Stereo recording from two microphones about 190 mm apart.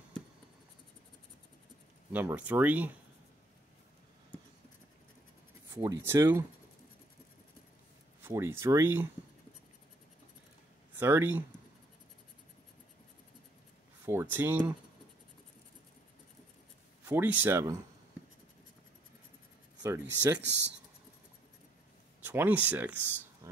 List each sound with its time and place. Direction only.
2.1 s speech: 10° right (ahead or behind)
5.8 s speech: 15° right (ahead or behind)
8.2 s speech: 10° right (ahead or behind)
11.0 s speech: 10° right (ahead or behind)
14.0 s speech: 10° right (ahead or behind)
17.0 s speech: 10° right (ahead or behind)
19.8 s speech: 15° right (ahead or behind)
22.2 s speech: 10° right (ahead or behind)
23.4 s a sound: 15° right (ahead or behind)